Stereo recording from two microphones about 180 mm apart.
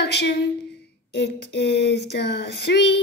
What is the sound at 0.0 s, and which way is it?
Speech, 65° left (ahead or behind).